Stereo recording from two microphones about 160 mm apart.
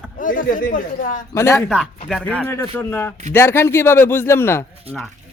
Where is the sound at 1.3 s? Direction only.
15° left (ahead or behind).